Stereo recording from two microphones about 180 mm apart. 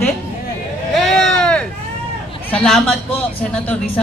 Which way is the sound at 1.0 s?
5° left (ahead or behind).